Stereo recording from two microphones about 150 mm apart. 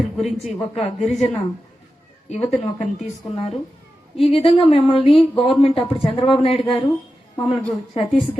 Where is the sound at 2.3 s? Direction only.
45° left (ahead or behind).